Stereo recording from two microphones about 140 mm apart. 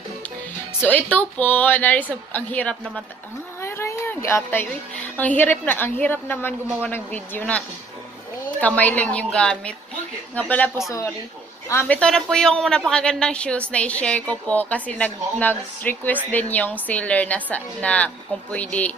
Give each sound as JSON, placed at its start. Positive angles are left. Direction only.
{"t": 0.7, "sound": "a woman's voice", "side_deg": 10}
{"t": 3.6, "sound": "a sound", "side_deg": 20}
{"t": 5.1, "sound": "a woman's voice", "side_deg": 10}
{"t": 10.9, "sound": "a woman's voice", "side_deg": 20}
{"t": 12.0, "sound": "a woman's voice", "side_deg": 5}